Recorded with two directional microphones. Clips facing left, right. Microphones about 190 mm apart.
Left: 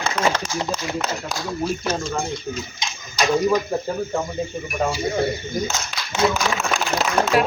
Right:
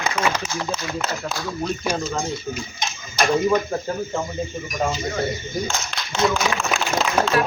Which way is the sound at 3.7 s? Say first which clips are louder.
Left 1 dB; 5° left (ahead or behind).